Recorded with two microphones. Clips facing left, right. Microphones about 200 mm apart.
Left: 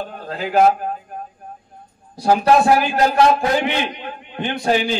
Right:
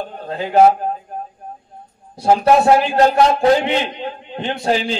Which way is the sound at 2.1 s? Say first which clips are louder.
Right 1 dB; 25° right (ahead or behind).